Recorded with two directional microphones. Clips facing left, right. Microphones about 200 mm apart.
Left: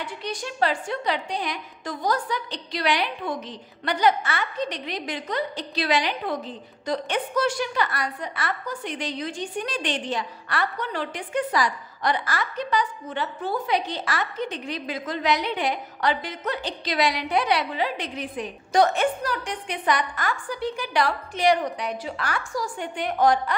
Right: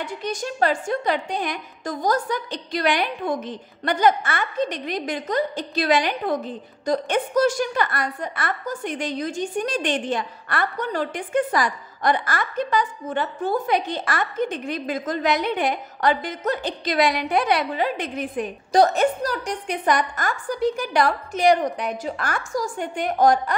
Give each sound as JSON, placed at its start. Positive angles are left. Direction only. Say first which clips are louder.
{"t": 0.0, "sound": "a woman's voice", "louder": "right 4 dB", "side_deg": -45}
{"t": 18.7, "sound": "a woman's voice", "louder": "right 3 dB", "side_deg": -35}